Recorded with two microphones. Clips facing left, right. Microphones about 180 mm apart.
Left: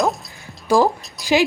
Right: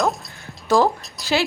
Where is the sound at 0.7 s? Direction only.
15° left (ahead or behind).